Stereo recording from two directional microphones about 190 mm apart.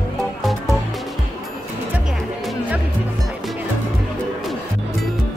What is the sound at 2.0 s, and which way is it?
Music, 5° right (ahead or behind).